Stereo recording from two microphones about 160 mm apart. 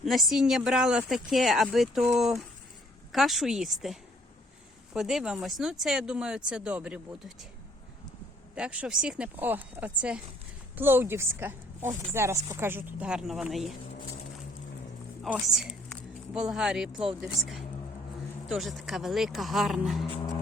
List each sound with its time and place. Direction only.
0.0 s speech: centre (ahead or behind)
4.9 s speech: 5° right (ahead or behind)
8.5 s speech: 5° right (ahead or behind)
15.2 s a woman's voice: 5° right (ahead or behind)